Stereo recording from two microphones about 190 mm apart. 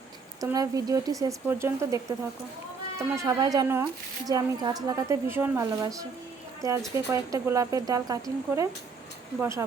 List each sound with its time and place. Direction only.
0.3 s speech: 15° right (ahead or behind)
3.0 s speech: 15° right (ahead or behind)